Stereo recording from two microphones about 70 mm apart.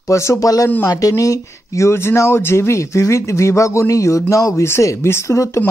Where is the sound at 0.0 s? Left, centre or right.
Left.